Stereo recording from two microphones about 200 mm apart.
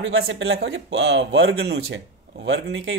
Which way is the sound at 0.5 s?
55° right (ahead or behind).